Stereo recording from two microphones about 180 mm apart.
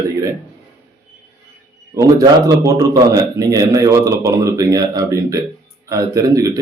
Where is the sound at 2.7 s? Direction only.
20° right (ahead or behind).